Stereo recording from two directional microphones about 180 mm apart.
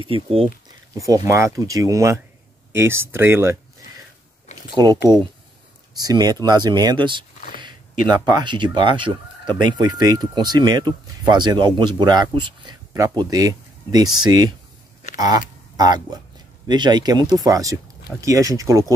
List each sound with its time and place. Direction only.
0.0 s speech: 30° right (ahead or behind)
0.9 s speech: 20° right (ahead or behind)
4.5 s a sound: 40° left (ahead or behind)
5.9 s speech: 20° right (ahead or behind)